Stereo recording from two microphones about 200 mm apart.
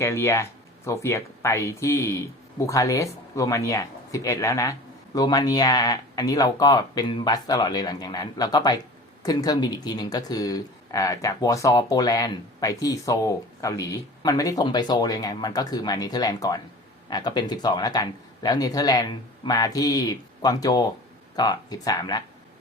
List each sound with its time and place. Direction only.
0.0 s speech: 15° left (ahead or behind)